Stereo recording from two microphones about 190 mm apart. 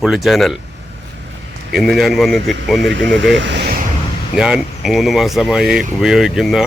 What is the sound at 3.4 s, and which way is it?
Speech, 65° right (ahead or behind).